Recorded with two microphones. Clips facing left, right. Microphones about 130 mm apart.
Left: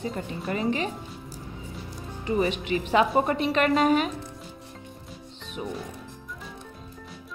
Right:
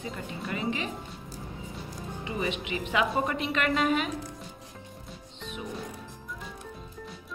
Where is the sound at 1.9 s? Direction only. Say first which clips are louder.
Left 9 dB; 40° left (ahead or behind).